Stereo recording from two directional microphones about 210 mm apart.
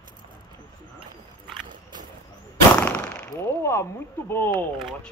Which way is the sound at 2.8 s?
5° left (ahead or behind).